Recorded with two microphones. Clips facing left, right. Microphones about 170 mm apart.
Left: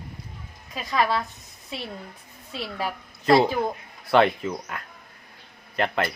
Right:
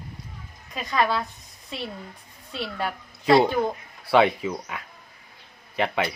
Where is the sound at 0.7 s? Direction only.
Centre (ahead or behind).